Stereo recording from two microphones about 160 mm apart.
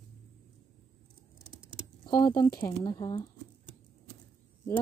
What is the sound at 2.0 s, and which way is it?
Speech, 25° left (ahead or behind).